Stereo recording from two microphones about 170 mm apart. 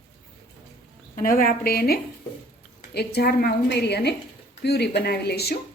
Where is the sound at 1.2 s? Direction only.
55° left (ahead or behind).